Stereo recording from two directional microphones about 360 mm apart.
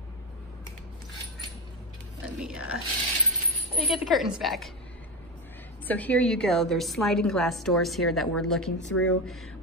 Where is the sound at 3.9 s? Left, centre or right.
Centre.